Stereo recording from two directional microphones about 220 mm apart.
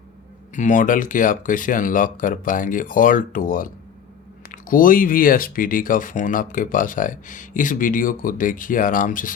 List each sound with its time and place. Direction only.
0.5 s speech: 35° left (ahead or behind)